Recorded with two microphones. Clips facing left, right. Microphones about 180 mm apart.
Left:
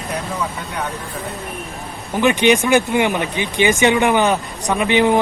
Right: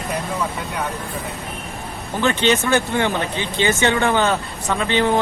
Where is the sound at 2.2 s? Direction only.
15° left (ahead or behind).